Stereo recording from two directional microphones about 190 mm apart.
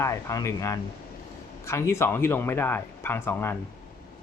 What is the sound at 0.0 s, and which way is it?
Speech, 15° left (ahead or behind).